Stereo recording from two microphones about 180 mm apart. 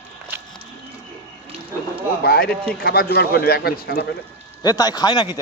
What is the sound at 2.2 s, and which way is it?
A man's voice, 60° left (ahead or behind).